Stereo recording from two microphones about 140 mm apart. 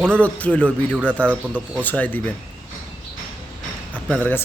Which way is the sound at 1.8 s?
10° left (ahead or behind).